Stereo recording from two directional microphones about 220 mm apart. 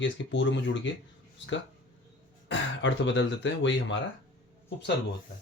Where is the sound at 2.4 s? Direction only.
55° left (ahead or behind).